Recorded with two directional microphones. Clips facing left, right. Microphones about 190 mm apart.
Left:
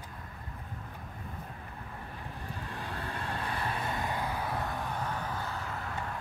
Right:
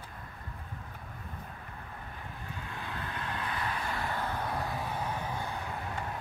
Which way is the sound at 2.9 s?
35° left (ahead or behind).